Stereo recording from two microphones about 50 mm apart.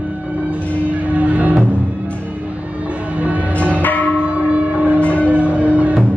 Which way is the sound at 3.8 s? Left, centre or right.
Left.